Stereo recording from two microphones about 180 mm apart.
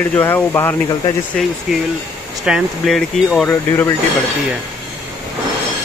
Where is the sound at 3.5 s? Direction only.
15° left (ahead or behind).